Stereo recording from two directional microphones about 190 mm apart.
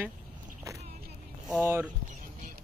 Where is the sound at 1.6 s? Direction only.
15° right (ahead or behind).